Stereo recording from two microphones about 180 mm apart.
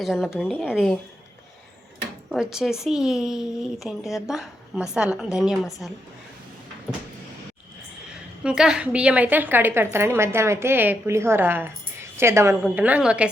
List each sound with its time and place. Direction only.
0.0 s a woman's voice: centre (ahead or behind)
2.3 s a woman's voice: 5° right (ahead or behind)
8.4 s a woman's voice: 5° right (ahead or behind)